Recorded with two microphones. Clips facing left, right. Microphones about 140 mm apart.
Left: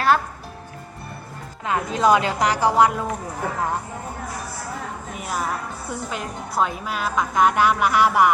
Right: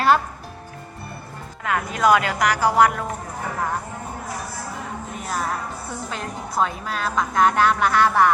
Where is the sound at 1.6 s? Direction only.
25° left (ahead or behind).